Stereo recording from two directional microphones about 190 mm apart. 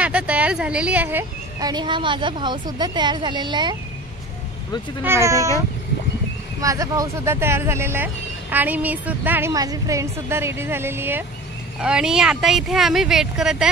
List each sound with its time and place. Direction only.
0.0 s speech: 5° right (ahead or behind); by 3.7 s 25° right (ahead or behind)
5.0 s speech: 15° right (ahead or behind)
6.6 s speech: 15° right (ahead or behind)